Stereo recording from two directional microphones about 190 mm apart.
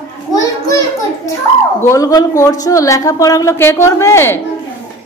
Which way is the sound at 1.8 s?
20° left (ahead or behind).